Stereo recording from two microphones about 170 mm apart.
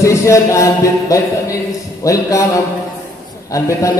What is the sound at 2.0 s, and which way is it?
Music, 20° left (ahead or behind).